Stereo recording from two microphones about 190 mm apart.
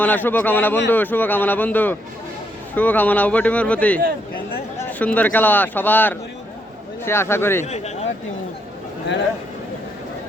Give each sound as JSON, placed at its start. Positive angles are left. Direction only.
{"t": 0.0, "sound": "speech", "side_deg": 10}
{"t": 7.6, "sound": "speech", "side_deg": 35}